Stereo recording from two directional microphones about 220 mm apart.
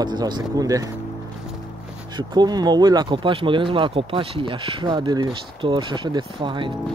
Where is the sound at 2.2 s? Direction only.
20° right (ahead or behind).